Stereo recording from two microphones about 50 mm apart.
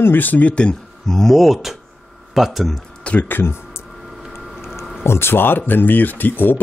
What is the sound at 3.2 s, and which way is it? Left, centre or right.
Speech, left.